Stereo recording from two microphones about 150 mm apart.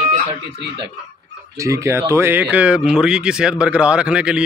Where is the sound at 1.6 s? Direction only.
20° right (ahead or behind).